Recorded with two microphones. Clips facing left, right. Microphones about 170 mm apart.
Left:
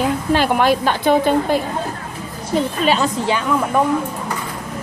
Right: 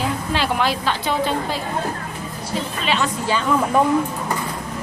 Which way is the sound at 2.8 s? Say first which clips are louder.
Left 4 dB; 40° left (ahead or behind).